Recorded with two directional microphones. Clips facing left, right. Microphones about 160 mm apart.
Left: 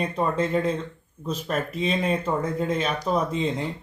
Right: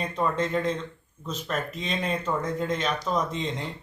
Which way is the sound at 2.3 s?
30° left (ahead or behind).